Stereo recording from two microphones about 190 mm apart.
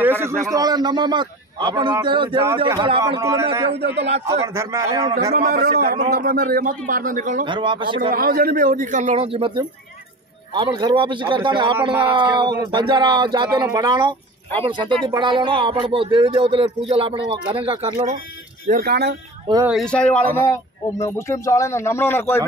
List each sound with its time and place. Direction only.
0.0 s a man's voice: 10° right (ahead or behind); by 3.2 s 25° right (ahead or behind)
3.2 s a man's voice: 15° right (ahead or behind)
3.7 s speech: 60° right (ahead or behind)
4.6 s a man's voice: 15° right (ahead or behind)
5.3 s a man's voice: 50° right (ahead or behind)
7.4 s a man's voice: 25° right (ahead or behind)
8.1 s a man's voice: 50° right (ahead or behind); by 18.1 s 30° right (ahead or behind)
18.7 s speech: 50° right (ahead or behind)
19.5 s a man's voice: 30° right (ahead or behind)
19.8 s speech: 5° left (ahead or behind)